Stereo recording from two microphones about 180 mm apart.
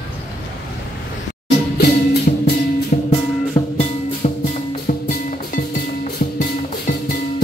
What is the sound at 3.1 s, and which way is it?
Music, 40° left (ahead or behind).